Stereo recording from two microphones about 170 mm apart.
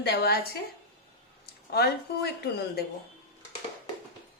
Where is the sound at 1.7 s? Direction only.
70° left (ahead or behind).